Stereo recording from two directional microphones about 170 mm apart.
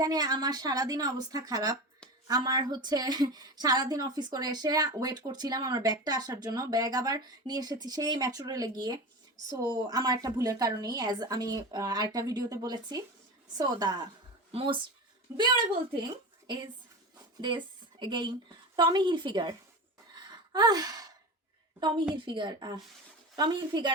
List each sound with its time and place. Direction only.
0.0 s a woman's voice: 25° right (ahead or behind)
18.0 s a woman's voice: 25° right (ahead or behind)
20.5 s gasp: 25° right (ahead or behind)
21.8 s a woman's voice: 25° right (ahead or behind)